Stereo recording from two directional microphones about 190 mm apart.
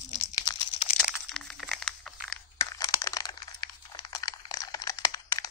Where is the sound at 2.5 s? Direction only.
20° left (ahead or behind).